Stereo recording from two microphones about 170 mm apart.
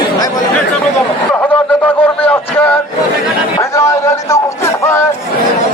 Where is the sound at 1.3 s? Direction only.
5° left (ahead or behind).